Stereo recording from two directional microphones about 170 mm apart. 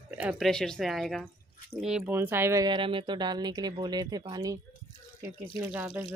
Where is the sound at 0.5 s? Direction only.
5° left (ahead or behind); by 4.6 s 20° right (ahead or behind).